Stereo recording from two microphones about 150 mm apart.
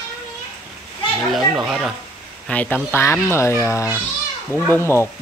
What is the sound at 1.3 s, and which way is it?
Speech, centre (ahead or behind).